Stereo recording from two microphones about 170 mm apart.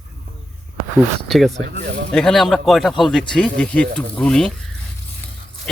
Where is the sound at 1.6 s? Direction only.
65° right (ahead or behind).